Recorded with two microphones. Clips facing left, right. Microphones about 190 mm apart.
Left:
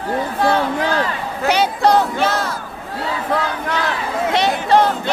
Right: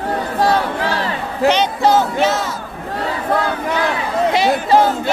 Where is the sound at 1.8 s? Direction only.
Centre (ahead or behind).